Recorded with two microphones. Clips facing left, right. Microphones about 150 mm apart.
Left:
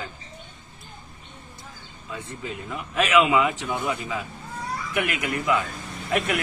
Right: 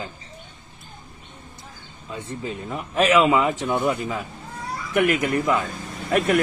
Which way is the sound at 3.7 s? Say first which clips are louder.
Right 5 dB; 50° right (ahead or behind).